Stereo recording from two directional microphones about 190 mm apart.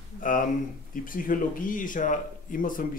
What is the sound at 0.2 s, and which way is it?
Speech, 45° left (ahead or behind).